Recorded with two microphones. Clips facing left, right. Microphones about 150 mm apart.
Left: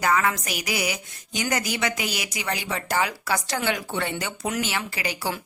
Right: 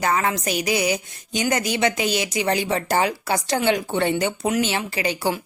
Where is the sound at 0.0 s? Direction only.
25° right (ahead or behind).